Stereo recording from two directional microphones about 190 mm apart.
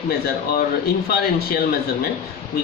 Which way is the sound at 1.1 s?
55° left (ahead or behind).